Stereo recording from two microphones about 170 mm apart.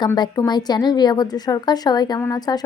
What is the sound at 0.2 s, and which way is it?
Speech, 25° left (ahead or behind).